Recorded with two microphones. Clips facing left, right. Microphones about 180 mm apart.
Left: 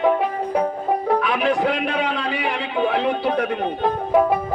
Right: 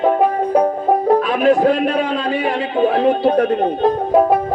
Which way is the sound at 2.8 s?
40° right (ahead or behind).